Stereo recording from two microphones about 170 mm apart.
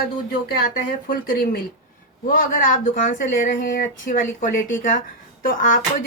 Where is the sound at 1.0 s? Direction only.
55° left (ahead or behind).